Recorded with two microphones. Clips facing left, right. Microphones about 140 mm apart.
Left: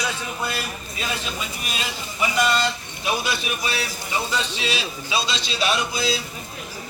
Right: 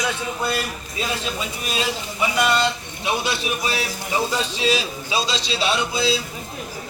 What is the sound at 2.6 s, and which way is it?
Speech, 25° right (ahead or behind).